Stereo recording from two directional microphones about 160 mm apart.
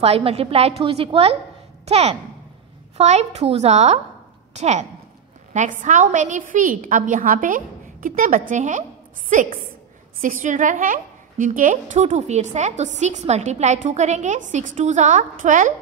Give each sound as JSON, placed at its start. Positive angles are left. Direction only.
{"t": 0.0, "sound": "a woman's voice", "side_deg": -40}